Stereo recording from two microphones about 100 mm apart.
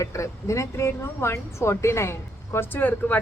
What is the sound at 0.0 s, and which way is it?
Speech, 30° left (ahead or behind).